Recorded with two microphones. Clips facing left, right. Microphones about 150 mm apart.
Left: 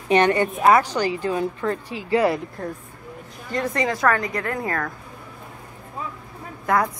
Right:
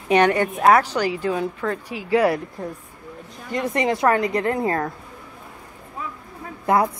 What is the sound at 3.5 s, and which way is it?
A woman's voice, 25° right (ahead or behind).